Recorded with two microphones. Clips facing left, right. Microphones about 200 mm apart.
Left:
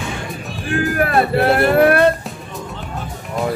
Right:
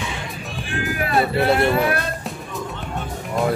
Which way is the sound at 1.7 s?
60° left (ahead or behind).